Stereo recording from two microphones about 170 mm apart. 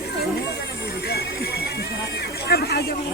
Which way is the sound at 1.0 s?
70° left (ahead or behind).